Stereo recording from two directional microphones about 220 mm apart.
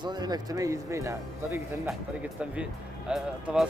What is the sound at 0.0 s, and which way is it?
Speech, 20° right (ahead or behind).